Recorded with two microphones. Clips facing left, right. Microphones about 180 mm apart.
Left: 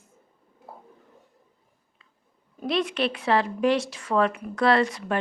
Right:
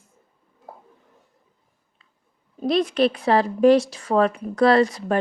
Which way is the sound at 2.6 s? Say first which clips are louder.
Right 6 dB; 40° right (ahead or behind).